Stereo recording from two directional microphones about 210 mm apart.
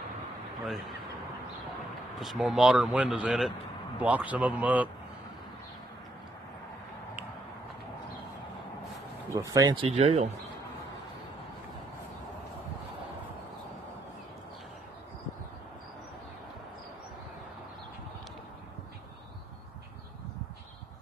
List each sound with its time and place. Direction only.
2.1 s a man's voice: centre (ahead or behind)
9.3 s speech: 15° right (ahead or behind); by 10.2 s 30° right (ahead or behind)